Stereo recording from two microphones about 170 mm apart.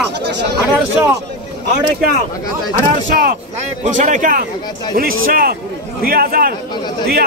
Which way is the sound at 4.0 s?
45° right (ahead or behind).